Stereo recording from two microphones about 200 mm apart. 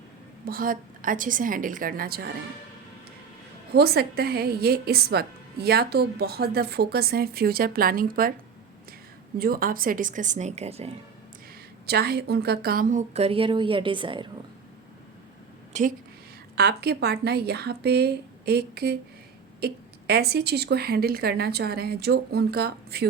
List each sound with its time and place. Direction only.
0.4 s a woman's voice: 45° right (ahead or behind)
3.7 s a woman's voice: 50° right (ahead or behind)
9.4 s a woman's voice: 45° right (ahead or behind); by 10.9 s 30° right (ahead or behind)
11.9 s a woman's voice: 55° right (ahead or behind); by 14.3 s 25° right (ahead or behind)
15.7 s a woman's voice: 35° right (ahead or behind)
16.6 s a woman's voice: 55° right (ahead or behind)